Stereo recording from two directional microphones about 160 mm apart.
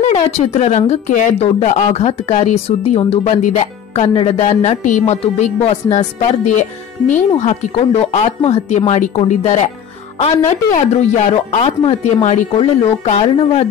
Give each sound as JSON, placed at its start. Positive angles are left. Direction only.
{"t": 0.0, "sound": "speech", "side_deg": 45}